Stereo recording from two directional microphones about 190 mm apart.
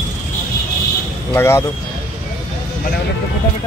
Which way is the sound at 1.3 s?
15° left (ahead or behind).